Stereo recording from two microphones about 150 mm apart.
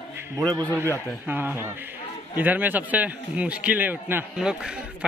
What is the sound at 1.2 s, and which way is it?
A man's voice, 15° right (ahead or behind).